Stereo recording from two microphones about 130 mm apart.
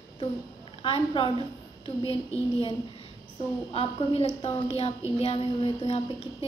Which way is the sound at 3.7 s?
45° left (ahead or behind).